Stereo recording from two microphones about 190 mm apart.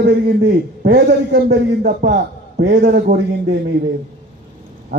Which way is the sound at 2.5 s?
65° right (ahead or behind).